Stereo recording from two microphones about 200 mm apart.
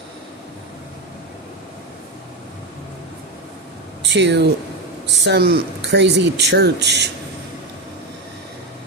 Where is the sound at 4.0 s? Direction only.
60° right (ahead or behind).